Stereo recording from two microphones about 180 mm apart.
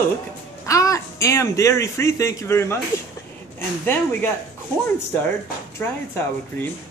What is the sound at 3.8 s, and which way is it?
Speech, 10° left (ahead or behind).